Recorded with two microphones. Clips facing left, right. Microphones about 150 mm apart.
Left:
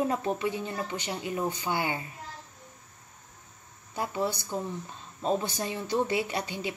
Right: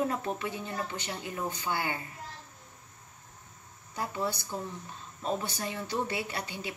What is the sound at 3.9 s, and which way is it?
Speech, 20° left (ahead or behind).